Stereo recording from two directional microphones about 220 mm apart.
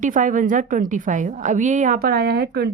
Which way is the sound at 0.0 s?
35° right (ahead or behind).